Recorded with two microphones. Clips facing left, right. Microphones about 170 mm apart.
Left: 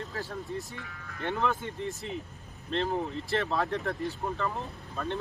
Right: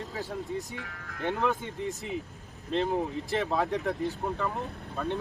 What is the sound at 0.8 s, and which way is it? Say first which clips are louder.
Speech: right 2 dB; 70° right (ahead or behind).